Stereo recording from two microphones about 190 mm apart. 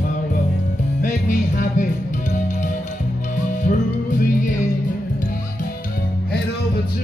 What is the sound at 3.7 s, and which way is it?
Music, 45° left (ahead or behind).